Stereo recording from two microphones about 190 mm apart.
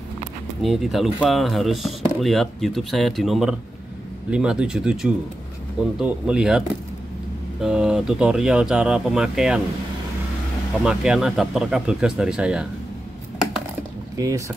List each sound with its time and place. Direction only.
0.6 s speech: centre (ahead or behind)
7.6 s speech: 5° right (ahead or behind)
10.8 s speech: 5° right (ahead or behind)
14.1 s speech: 15° right (ahead or behind)